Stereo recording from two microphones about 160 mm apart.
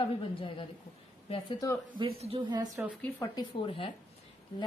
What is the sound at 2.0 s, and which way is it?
Speech, 35° right (ahead or behind).